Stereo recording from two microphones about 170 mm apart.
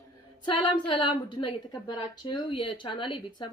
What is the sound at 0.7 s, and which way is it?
A woman's voice, 30° left (ahead or behind).